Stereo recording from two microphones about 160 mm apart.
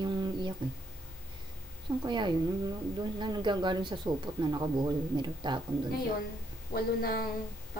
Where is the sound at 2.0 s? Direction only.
30° right (ahead or behind).